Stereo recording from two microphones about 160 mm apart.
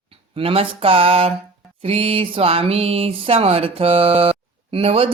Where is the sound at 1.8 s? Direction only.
40° right (ahead or behind).